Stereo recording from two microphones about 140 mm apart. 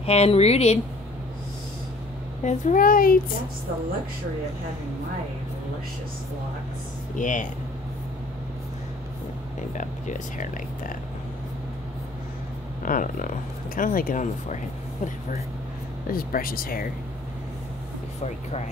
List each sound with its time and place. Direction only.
0.0 s speech: 45° left (ahead or behind)
2.4 s a child's voice: 60° left (ahead or behind); by 3.2 s 85° left
7.2 s speech: 65° left (ahead or behind)
9.8 s speech: 60° left (ahead or behind)
12.8 s speech: 75° left (ahead or behind)
16.1 s speech: 90° left